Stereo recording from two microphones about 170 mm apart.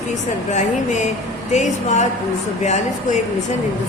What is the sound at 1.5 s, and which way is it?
A woman's voice, 45° left (ahead or behind).